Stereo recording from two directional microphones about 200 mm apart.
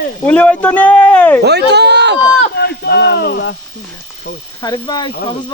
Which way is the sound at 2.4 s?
55° left (ahead or behind).